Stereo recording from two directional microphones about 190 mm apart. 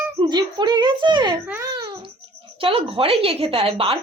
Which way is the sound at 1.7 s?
20° right (ahead or behind).